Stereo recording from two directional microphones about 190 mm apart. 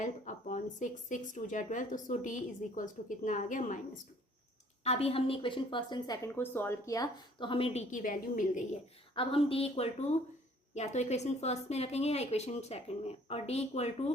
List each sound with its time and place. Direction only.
0.0 s speech: 40° left (ahead or behind)
4.8 s speech: 30° left (ahead or behind)
9.1 s speech: 30° left (ahead or behind)